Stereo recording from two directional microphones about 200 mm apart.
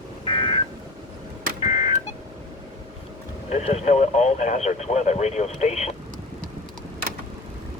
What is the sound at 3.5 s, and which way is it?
Speech, 35° left (ahead or behind).